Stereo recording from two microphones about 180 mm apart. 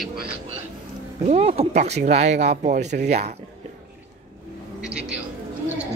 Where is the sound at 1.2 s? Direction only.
35° right (ahead or behind).